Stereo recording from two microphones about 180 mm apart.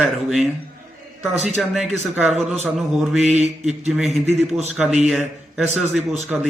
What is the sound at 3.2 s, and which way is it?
Mantra, 40° right (ahead or behind).